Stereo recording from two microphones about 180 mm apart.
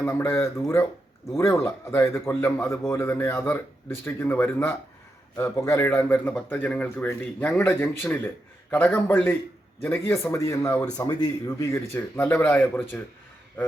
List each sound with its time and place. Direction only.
0.0 s a man's voice: 10° left (ahead or behind)